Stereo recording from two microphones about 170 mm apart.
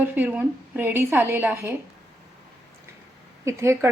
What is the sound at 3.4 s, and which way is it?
Speech, 15° right (ahead or behind).